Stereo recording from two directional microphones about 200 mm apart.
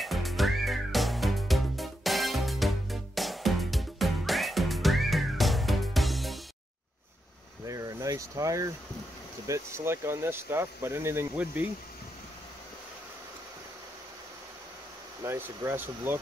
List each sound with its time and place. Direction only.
0.0 s music: centre (ahead or behind)
7.6 s a sound: 15° right (ahead or behind)
9.5 s speech: 15° right (ahead or behind)
15.2 s speech: 10° right (ahead or behind)